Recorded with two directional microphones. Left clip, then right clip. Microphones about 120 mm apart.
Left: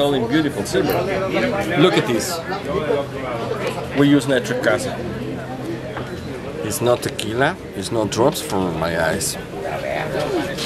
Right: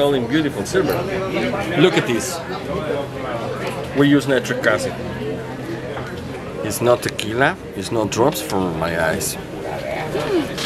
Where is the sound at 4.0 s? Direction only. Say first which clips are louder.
Even; 10° left (ahead or behind).